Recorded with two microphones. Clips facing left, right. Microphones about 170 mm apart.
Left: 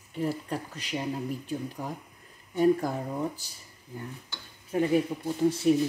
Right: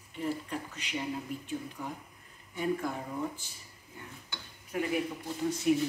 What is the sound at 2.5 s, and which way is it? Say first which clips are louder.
Speech: left 9 dB; 40° left (ahead or behind).